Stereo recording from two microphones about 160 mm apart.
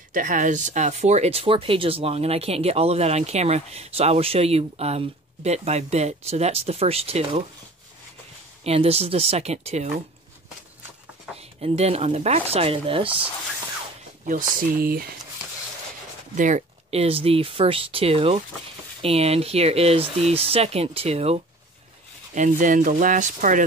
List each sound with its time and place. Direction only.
0.1 s speech: 55° right (ahead or behind); by 7.4 s 40° right (ahead or behind)
8.6 s speech: 40° right (ahead or behind)
11.3 s speech: 40° right (ahead or behind)
14.2 s speech: 60° right (ahead or behind)
16.3 s speech: 50° right (ahead or behind)
22.3 s speech: 50° right (ahead or behind)